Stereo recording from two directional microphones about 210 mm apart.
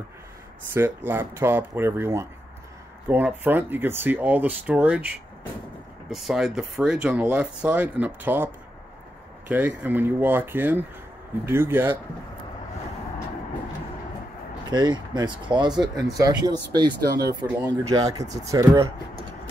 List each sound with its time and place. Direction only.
0.7 s speech: 10° right (ahead or behind)
14.7 s speech: 20° right (ahead or behind)